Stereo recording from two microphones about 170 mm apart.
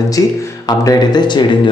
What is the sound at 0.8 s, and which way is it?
Speech, 25° left (ahead or behind).